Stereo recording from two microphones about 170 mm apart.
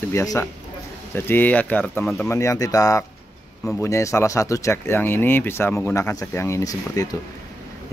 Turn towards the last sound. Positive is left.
turn(degrees=20)  # may be behind; listen again after turning